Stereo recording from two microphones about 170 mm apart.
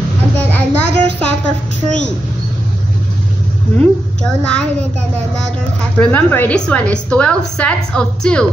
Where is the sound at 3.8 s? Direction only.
5° left (ahead or behind).